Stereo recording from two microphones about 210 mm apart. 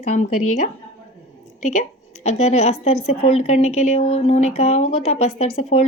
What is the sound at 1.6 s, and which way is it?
Speech, 35° left (ahead or behind).